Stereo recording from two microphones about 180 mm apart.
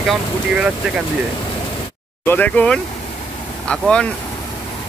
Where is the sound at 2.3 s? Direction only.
10° left (ahead or behind).